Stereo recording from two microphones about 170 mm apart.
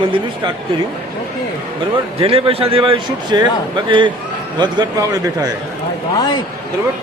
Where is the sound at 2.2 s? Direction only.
35° right (ahead or behind).